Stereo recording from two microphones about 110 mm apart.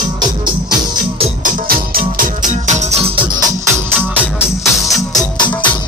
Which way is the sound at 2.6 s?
80° right.